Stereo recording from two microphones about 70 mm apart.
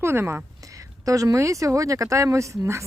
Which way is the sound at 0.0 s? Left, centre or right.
Right.